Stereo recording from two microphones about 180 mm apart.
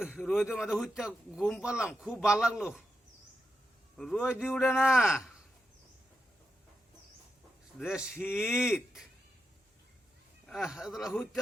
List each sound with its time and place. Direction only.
0.1 s speech: centre (ahead or behind)
3.9 s speech: centre (ahead or behind)
7.8 s speech: 5° right (ahead or behind)
10.4 s speech: centre (ahead or behind)